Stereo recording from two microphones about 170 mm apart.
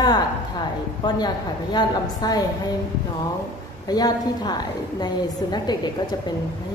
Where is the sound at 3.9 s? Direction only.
25° left (ahead or behind).